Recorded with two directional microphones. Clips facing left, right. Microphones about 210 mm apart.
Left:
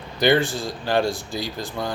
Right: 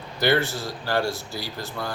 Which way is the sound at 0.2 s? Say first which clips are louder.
Left 3 dB; 15° left (ahead or behind).